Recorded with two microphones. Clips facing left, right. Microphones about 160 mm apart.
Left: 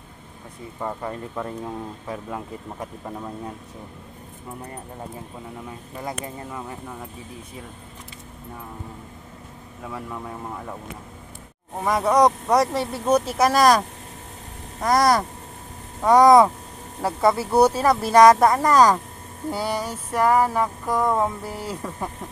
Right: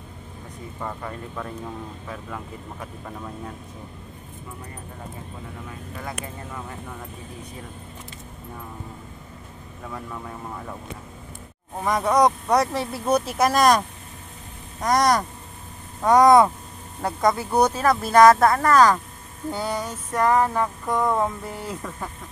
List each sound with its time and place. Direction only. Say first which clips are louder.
0.7 s speech: left 4 dB; 15° left (ahead or behind)
5.7 s speech: left 3 dB; 15° left (ahead or behind)
9.8 s speech: left 2 dB; 10° left (ahead or behind)
11.8 s speech: left 1 dB; 5° left (ahead or behind)